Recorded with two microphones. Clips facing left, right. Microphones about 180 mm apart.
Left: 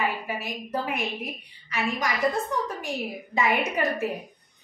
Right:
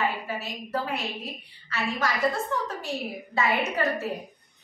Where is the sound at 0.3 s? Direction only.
15° left (ahead or behind).